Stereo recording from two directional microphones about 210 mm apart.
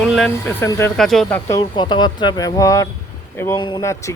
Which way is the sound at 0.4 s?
10° left (ahead or behind).